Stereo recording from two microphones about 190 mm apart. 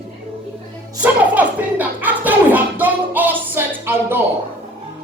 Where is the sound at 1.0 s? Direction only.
10° right (ahead or behind).